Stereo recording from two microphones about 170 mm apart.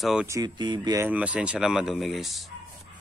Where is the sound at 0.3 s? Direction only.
25° right (ahead or behind).